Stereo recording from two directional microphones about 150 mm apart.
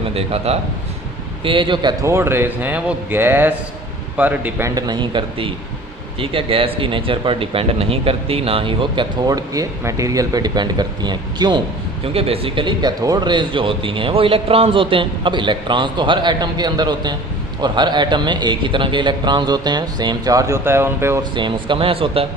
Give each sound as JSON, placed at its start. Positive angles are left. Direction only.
{"t": 0.1, "sound": "speech", "side_deg": -40}
{"t": 2.0, "sound": "speech", "side_deg": -15}
{"t": 4.7, "sound": "speech", "side_deg": -30}
{"t": 12.1, "sound": "a man's voice", "side_deg": -40}
{"t": 21.3, "sound": "speech", "side_deg": -35}